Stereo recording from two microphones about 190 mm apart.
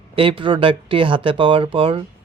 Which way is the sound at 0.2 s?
25° right (ahead or behind).